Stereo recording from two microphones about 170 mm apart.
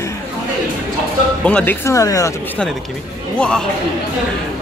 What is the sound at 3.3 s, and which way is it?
Speech, 5° left (ahead or behind).